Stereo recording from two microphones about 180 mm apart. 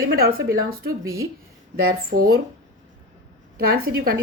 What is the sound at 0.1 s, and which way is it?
Speech, 55° right (ahead or behind).